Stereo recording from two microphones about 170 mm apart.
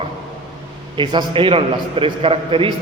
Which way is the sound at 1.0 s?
25° right (ahead or behind).